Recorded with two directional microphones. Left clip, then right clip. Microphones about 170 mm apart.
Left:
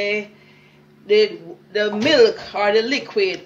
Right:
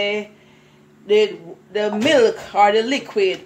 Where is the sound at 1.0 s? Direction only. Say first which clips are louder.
Even; 30° right (ahead or behind).